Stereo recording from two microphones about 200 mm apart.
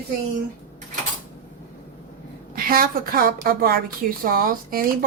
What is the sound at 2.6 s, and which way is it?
Speech, 45° right (ahead or behind).